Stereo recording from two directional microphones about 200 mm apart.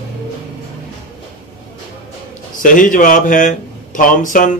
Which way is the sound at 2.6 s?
40° left (ahead or behind).